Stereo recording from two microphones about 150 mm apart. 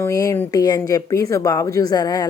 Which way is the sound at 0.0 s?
20° left (ahead or behind).